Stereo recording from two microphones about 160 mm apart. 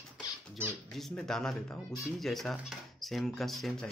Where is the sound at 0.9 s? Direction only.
Centre (ahead or behind).